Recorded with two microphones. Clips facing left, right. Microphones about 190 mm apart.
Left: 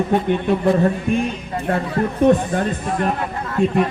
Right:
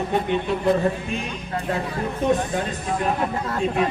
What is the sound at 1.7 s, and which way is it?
Speech, 55° left (ahead or behind).